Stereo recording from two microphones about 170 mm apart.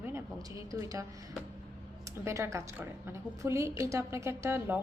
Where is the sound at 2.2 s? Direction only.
15° right (ahead or behind).